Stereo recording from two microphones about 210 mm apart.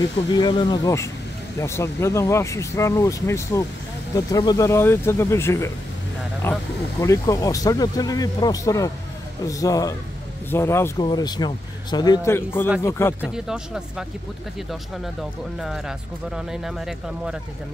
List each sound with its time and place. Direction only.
0.3 s speech: 20° left (ahead or behind)
13.2 s speech: 5° right (ahead or behind)
16.3 s speech: centre (ahead or behind)